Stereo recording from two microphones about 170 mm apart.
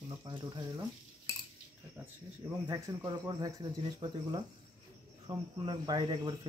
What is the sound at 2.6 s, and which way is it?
Speech, 20° right (ahead or behind).